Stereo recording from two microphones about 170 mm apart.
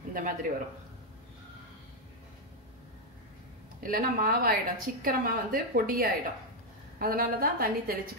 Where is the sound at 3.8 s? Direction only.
55° right (ahead or behind).